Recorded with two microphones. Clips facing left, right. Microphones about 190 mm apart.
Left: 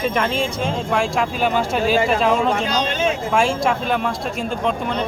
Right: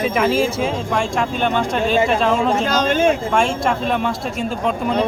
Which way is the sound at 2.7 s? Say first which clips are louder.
Right 4 dB; 50° right (ahead or behind).